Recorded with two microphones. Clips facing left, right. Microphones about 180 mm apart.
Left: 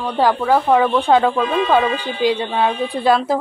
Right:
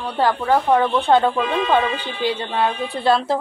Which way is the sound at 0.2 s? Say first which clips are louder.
Left 2 dB; 10° left (ahead or behind).